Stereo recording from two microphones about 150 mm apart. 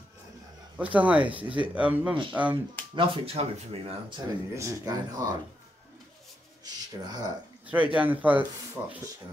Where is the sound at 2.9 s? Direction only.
35° right (ahead or behind).